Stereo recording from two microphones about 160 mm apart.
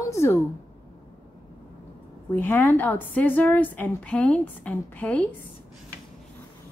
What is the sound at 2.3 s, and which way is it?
A woman's voice, 10° left (ahead or behind).